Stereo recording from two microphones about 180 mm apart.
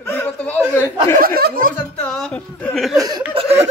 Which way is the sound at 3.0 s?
25° right (ahead or behind).